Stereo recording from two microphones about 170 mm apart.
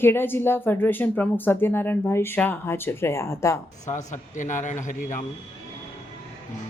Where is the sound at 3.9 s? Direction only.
45° left (ahead or behind).